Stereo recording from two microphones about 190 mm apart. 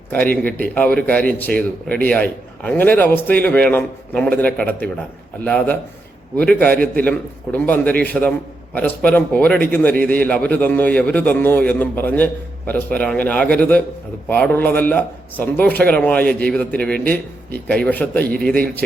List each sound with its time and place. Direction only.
0.1 s a man's voice: 10° left (ahead or behind)